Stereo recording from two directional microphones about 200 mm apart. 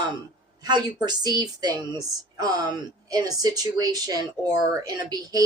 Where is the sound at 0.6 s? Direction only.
20° right (ahead or behind).